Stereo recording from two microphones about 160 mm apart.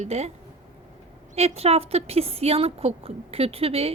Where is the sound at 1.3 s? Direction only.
40° right (ahead or behind).